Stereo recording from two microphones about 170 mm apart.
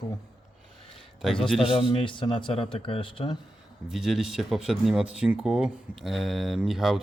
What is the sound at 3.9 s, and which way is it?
Speech, centre (ahead or behind).